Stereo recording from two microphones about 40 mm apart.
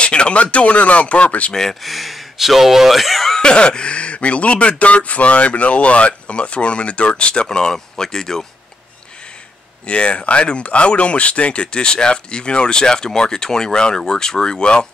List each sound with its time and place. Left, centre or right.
0.0 s speech: left
1.5 s speech: centre
1.9 s speech: centre
3.3 s speech: left
9.8 s speech: left